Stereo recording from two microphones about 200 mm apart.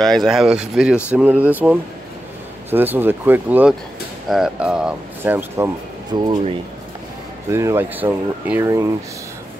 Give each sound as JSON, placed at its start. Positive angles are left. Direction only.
{"t": 0.0, "sound": "speech", "side_deg": 0}
{"t": 6.1, "sound": "speech", "side_deg": -20}